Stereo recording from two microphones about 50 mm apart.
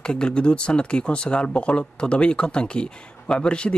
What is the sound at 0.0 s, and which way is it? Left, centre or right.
Speech, centre.